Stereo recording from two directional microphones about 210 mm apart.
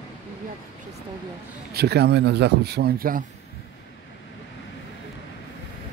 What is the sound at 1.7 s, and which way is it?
Speech, 50° right (ahead or behind).